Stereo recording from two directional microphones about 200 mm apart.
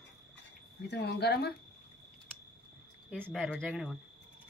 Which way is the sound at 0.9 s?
55° left (ahead or behind).